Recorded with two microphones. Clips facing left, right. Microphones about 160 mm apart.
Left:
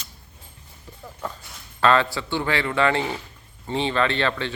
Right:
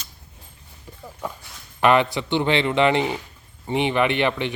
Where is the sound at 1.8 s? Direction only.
20° right (ahead or behind).